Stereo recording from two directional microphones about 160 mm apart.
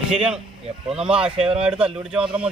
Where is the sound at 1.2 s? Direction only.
35° right (ahead or behind).